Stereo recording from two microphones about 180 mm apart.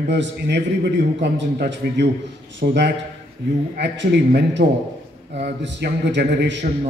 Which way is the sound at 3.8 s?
70° right (ahead or behind).